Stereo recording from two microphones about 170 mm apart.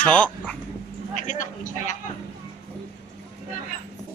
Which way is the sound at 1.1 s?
50° left (ahead or behind).